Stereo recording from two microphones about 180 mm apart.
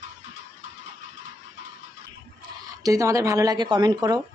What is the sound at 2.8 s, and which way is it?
Speech, 15° right (ahead or behind).